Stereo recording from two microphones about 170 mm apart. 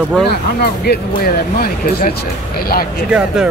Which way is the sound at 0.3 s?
70° left (ahead or behind).